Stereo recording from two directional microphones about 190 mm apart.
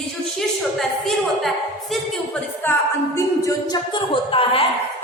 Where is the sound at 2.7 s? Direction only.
10° left (ahead or behind).